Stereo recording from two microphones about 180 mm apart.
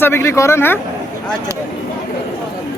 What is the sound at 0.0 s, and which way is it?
Speech, 15° left (ahead or behind).